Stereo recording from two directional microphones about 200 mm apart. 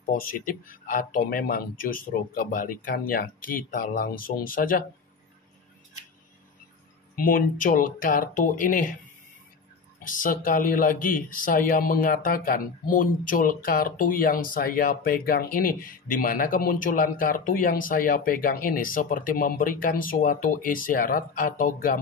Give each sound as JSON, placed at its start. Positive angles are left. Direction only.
{"t": 0.0, "sound": "speech", "side_deg": 45}
{"t": 7.2, "sound": "speech", "side_deg": 45}
{"t": 9.9, "sound": "speech", "side_deg": 45}